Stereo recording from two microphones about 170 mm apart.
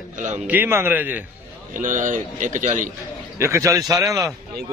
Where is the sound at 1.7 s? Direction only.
50° right (ahead or behind).